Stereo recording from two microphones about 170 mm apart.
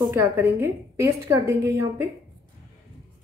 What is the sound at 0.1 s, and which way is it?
A woman's voice, 15° right (ahead or behind).